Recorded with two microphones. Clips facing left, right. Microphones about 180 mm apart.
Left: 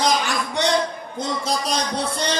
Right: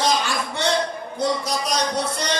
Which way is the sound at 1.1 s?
30° left (ahead or behind).